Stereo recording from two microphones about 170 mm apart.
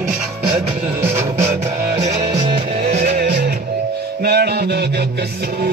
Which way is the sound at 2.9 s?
45° right (ahead or behind).